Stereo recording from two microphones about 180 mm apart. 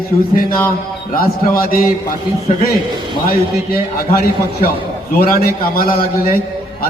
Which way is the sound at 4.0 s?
55° left (ahead or behind).